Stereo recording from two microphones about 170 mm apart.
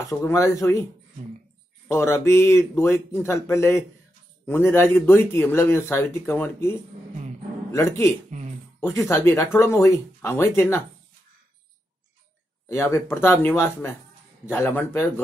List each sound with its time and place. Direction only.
0.0 s speech: 15° left (ahead or behind)
1.9 s speech: 15° left (ahead or behind)
8.3 s a sound: 45° right (ahead or behind)
8.8 s speech: 15° left (ahead or behind)
12.6 s speech: 15° left (ahead or behind)